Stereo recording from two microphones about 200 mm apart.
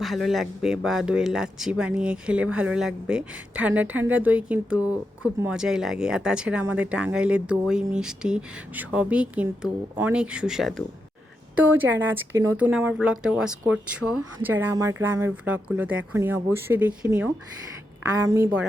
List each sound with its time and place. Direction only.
0.0 s speech: centre (ahead or behind)